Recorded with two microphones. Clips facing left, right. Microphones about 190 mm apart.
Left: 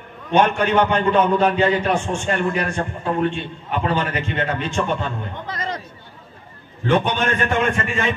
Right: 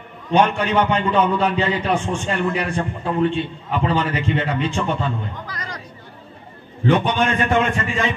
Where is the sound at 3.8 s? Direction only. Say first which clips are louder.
Right 2 dB; 55° left (ahead or behind).